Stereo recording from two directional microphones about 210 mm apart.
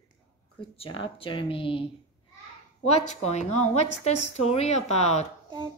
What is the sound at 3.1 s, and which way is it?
A woman's voice, 30° left (ahead or behind).